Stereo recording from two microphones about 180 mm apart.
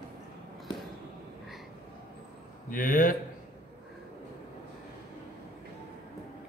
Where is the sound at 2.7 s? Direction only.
50° left (ahead or behind).